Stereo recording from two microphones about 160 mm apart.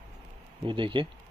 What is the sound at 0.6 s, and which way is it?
Speech, 30° right (ahead or behind).